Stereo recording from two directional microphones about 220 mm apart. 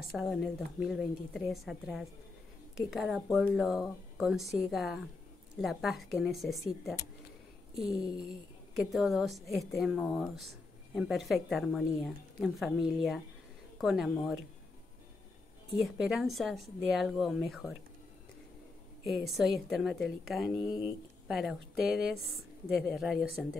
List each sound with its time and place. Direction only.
0.0 s a woman's voice: centre (ahead or behind)
15.8 s a woman's voice: centre (ahead or behind)
19.0 s a woman's voice: centre (ahead or behind)
20.4 s speech: 15° left (ahead or behind)
21.3 s a woman's voice: centre (ahead or behind)